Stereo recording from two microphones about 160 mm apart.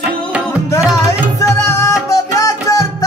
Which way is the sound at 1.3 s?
20° left (ahead or behind).